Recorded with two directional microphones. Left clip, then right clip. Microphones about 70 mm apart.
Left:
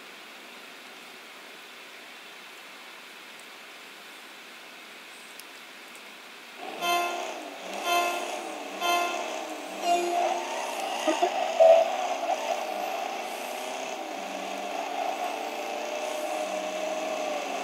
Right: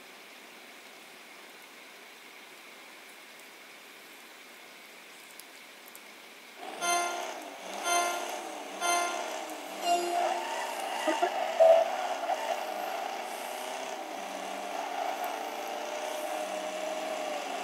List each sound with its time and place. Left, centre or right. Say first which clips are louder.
6.8 s music: left 3 dB; left